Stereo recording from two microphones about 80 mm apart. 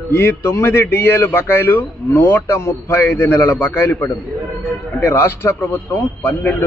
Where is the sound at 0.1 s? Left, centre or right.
Left.